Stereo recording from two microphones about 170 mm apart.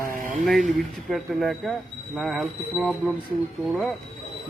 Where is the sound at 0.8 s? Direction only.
Centre (ahead or behind).